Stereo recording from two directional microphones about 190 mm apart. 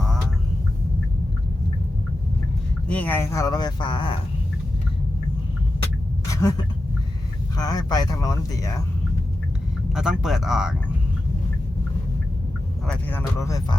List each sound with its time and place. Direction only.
2.8 s speech: 5° left (ahead or behind); by 4.2 s 25° left (ahead or behind)
6.3 s speech: 15° left (ahead or behind)
9.9 s speech: 5° right (ahead or behind)
12.9 s speech: 10° left (ahead or behind)